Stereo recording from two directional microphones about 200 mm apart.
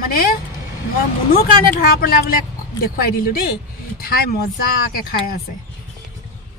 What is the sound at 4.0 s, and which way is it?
Speech, 50° left (ahead or behind).